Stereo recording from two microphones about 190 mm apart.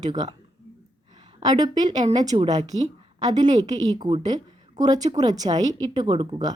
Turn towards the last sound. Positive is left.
turn(degrees=-25)  # may be behind; listen again after turning